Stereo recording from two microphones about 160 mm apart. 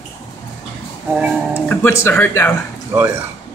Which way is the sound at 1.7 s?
15° left (ahead or behind).